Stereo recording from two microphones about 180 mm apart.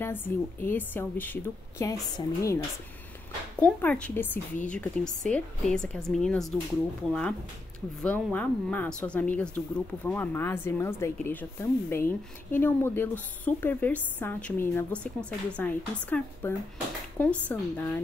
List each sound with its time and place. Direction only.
0.0 s speech: 10° left (ahead or behind)
3.5 s speech: 5° left (ahead or behind)